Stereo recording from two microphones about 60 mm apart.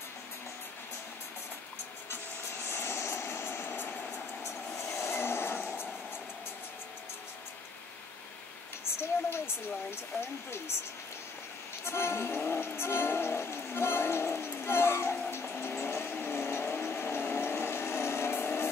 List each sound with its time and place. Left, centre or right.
2.7 s vehicle: left
4.4 s vehicle: left
11.8 s music: left
15.4 s vehicle: left